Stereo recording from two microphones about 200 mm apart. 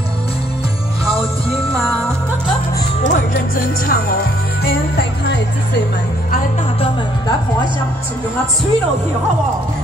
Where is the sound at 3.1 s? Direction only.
45° left (ahead or behind).